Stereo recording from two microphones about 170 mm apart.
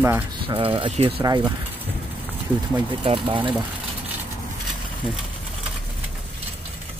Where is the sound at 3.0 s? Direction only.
30° right (ahead or behind).